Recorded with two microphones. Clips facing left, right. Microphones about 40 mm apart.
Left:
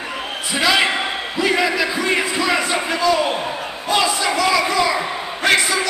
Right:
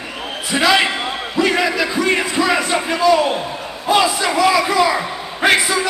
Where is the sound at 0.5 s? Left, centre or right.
Centre.